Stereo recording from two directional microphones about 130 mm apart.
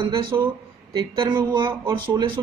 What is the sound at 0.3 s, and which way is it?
Speech, 25° right (ahead or behind).